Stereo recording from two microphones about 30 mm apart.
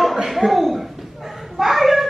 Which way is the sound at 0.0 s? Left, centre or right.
Centre.